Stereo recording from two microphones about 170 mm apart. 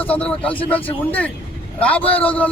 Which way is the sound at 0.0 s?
10° left (ahead or behind).